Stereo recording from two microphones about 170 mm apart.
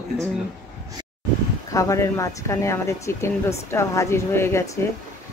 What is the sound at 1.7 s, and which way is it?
Speech, 20° left (ahead or behind).